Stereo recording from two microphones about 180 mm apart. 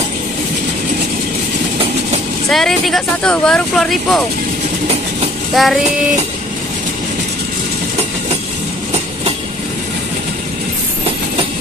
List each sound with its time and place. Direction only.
2.5 s speech: centre (ahead or behind)
5.5 s child singing: centre (ahead or behind)